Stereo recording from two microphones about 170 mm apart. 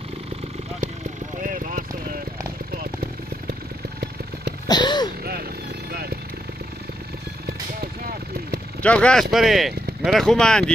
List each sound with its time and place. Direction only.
1.4 s vehicle: 55° right (ahead or behind)
4.6 s a sound: 25° left (ahead or behind)
5.9 s vehicle: 65° right (ahead or behind)
7.4 s vehicle: 65° right (ahead or behind)
8.8 s speech: 5° left (ahead or behind)